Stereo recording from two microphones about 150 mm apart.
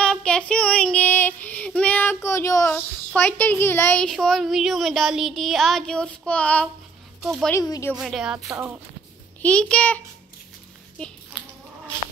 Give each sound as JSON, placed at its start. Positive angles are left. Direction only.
{"t": 0.0, "sound": "child singing", "side_deg": 5}
{"t": 3.1, "sound": "speech", "side_deg": 5}
{"t": 7.5, "sound": "speech", "side_deg": 20}
{"t": 8.0, "sound": "speech", "side_deg": -5}
{"t": 8.5, "sound": "speech", "side_deg": -15}
{"t": 9.4, "sound": "a child's voice", "side_deg": 5}